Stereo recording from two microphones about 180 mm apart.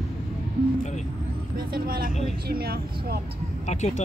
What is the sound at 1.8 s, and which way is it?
Vehicle, 55° right (ahead or behind).